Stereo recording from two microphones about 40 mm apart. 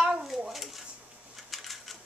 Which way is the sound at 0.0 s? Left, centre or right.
Centre.